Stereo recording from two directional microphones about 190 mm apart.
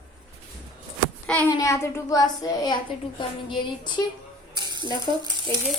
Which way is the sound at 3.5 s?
25° left (ahead or behind).